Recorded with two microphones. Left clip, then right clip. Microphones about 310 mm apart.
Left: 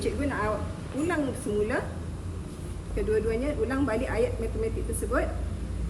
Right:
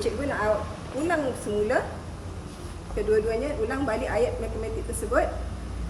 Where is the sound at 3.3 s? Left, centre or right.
Centre.